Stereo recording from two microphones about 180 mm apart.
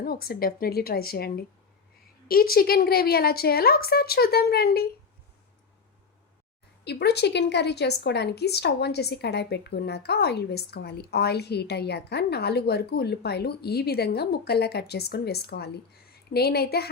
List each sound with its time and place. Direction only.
0.0 s a woman's voice: 55° left (ahead or behind)
6.8 s a woman's voice: 65° left (ahead or behind)